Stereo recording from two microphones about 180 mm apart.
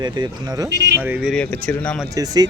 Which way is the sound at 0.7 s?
70° right (ahead or behind).